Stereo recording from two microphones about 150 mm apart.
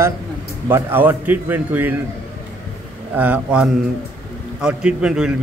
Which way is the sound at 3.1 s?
10° right (ahead or behind).